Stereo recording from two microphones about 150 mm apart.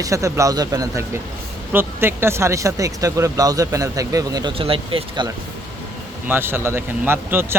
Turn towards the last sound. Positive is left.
turn(degrees=-15)  # may be behind; listen again after turning